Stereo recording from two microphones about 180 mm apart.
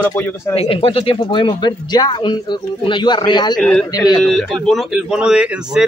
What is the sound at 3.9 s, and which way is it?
Speech, 20° left (ahead or behind).